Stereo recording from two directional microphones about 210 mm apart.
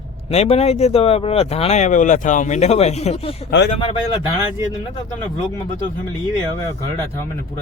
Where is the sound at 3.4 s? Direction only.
50° left (ahead or behind).